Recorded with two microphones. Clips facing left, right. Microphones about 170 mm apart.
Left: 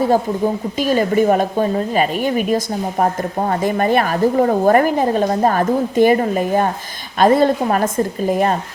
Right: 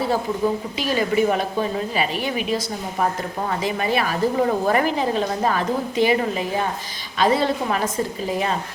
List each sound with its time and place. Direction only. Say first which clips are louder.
0.8 s a woman's voice: left 5 dB; 45° left (ahead or behind)